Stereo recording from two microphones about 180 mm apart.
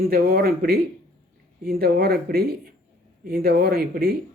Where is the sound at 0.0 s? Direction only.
55° right (ahead or behind).